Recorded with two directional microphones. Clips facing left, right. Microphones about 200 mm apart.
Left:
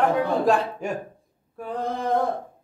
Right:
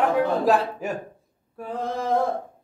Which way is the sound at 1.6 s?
Centre (ahead or behind).